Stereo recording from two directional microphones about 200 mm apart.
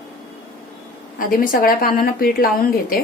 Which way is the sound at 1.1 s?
45° left (ahead or behind).